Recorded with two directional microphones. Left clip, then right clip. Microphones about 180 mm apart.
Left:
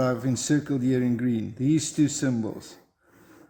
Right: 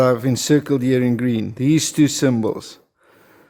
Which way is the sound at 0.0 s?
50° right (ahead or behind).